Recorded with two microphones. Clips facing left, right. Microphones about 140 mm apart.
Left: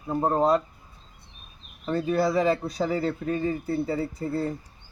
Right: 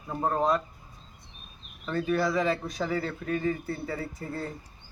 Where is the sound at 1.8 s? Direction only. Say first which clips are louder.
Left 3 dB; 30° left (ahead or behind).